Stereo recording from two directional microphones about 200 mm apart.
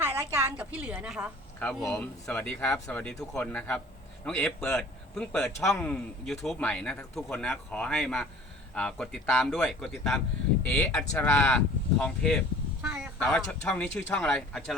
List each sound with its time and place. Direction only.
0.0 s a woman's voice: 10° right (ahead or behind)
12.8 s a sound: 5° right (ahead or behind)
13.1 s a man's voice: 5° left (ahead or behind)